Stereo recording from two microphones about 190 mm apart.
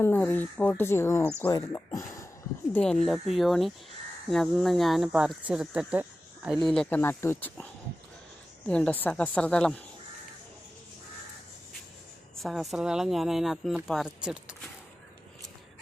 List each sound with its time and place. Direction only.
0.0 s speech: 10° left (ahead or behind)
2.7 s speech: 5° left (ahead or behind)
12.4 s speech: centre (ahead or behind)